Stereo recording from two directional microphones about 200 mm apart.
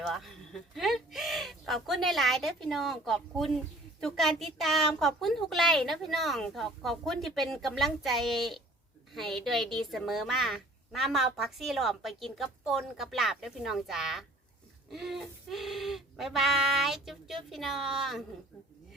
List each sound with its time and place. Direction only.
0.0 s a woman's voice: centre (ahead or behind)